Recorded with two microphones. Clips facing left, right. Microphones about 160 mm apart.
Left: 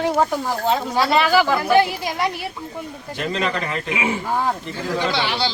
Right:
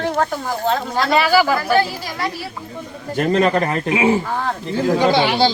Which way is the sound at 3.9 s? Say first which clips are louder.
Right 9 dB; 30° right (ahead or behind).